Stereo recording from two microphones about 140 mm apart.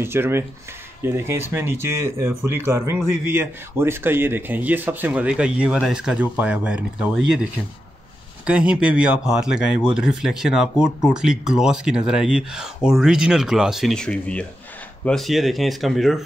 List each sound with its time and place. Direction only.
0.0 s speech: 15° right (ahead or behind)
8.5 s speech: 10° right (ahead or behind)